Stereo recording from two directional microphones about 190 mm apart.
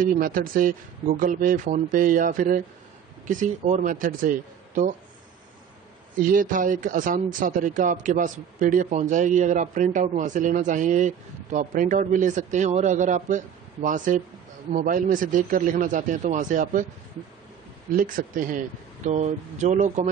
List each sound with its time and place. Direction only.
0.0 s speech: 45° right (ahead or behind)
6.1 s speech: 45° right (ahead or behind)
17.9 s speech: 45° right (ahead or behind)